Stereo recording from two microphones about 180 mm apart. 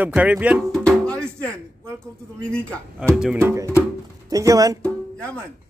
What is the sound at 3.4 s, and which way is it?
Speech, 15° right (ahead or behind).